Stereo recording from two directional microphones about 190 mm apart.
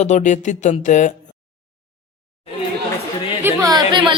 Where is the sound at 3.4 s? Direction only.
15° right (ahead or behind).